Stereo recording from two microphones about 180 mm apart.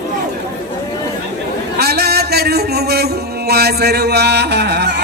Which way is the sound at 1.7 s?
60° right (ahead or behind).